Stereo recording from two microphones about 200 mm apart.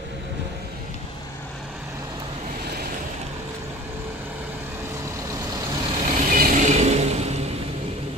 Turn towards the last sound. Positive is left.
turn(degrees=-35)  # may be behind; listen again after turning